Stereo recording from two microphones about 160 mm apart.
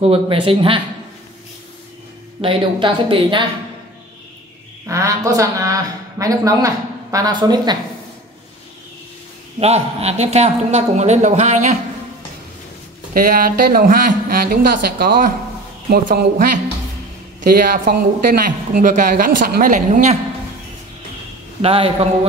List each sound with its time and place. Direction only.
0.0 s speech: 35° right (ahead or behind)
2.4 s speech: 35° right (ahead or behind)
4.8 s a woman's voice: 20° right (ahead or behind)
9.6 s speech: 40° right (ahead or behind)
13.1 s speech: 60° right (ahead or behind)
17.5 s speech: 60° right (ahead or behind)
21.5 s speech: 35° right (ahead or behind)